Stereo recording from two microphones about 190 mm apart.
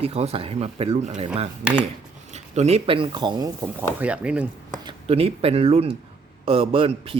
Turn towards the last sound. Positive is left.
turn(degrees=-30)  # may be behind; listen again after turning